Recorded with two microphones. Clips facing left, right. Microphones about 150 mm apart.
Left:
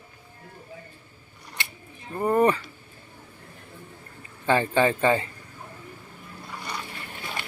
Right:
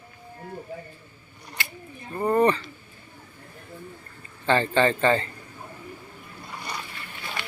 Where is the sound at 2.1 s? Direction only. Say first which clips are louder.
Even; 5° left (ahead or behind).